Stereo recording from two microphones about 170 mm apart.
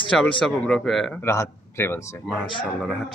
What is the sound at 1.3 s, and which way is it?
Speech, 15° left (ahead or behind).